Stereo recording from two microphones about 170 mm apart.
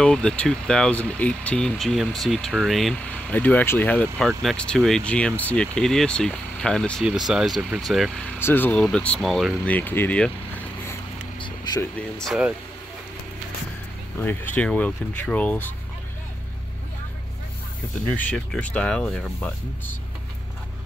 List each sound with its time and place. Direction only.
0.0 s speech: 5° left (ahead or behind)
8.4 s speech: 10° left (ahead or behind)
11.3 s a sound: 25° left (ahead or behind)
12.2 s speech: centre (ahead or behind)
14.2 s speech: 10° left (ahead or behind)
18.1 s speech: 5° left (ahead or behind)